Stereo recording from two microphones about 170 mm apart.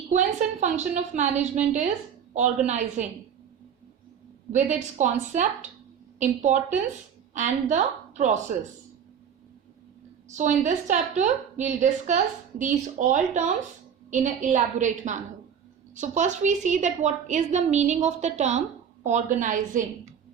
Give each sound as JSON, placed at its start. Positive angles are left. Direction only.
{"t": 0.1, "sound": "a woman's voice", "side_deg": -45}
{"t": 4.5, "sound": "a woman's voice", "side_deg": -45}
{"t": 10.2, "sound": "a woman's voice", "side_deg": -45}